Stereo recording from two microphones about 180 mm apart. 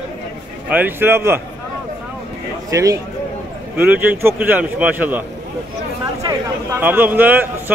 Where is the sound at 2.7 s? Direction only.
20° right (ahead or behind).